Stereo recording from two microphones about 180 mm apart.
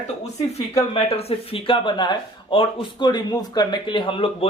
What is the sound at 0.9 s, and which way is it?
Speech, 35° left (ahead or behind).